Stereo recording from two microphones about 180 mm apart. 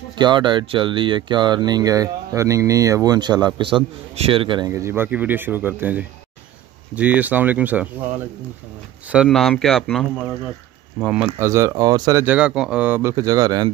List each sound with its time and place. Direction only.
0.2 s speech: 25° right (ahead or behind); by 7.9 s 10° right (ahead or behind)
9.1 s speech: centre (ahead or behind)
11.3 s speech: 15° right (ahead or behind)